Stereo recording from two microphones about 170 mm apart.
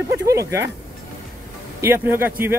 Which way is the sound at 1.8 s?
15° right (ahead or behind).